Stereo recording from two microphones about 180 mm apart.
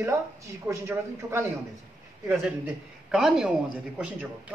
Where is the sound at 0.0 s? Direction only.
15° right (ahead or behind).